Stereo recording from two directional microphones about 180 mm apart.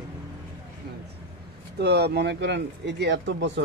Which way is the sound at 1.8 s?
65° right (ahead or behind).